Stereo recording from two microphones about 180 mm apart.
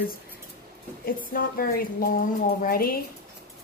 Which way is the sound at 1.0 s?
50° left (ahead or behind).